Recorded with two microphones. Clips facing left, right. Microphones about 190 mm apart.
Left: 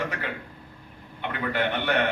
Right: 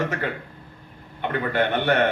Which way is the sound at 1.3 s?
45° right (ahead or behind).